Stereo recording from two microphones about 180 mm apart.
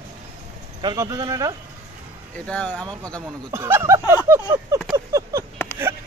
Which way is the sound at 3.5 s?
15° right (ahead or behind).